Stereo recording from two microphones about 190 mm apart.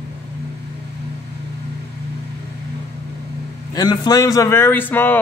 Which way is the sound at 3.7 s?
20° left (ahead or behind).